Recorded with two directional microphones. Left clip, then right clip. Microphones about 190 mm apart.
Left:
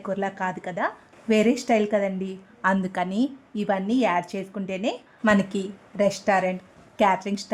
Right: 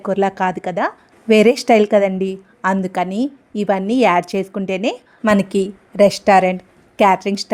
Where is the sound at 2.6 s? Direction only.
20° right (ahead or behind).